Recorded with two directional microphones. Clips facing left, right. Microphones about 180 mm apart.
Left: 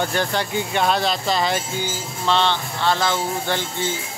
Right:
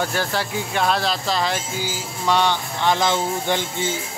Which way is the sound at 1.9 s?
10° right (ahead or behind).